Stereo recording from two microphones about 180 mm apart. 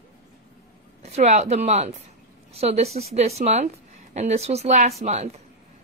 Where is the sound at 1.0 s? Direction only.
40° right (ahead or behind).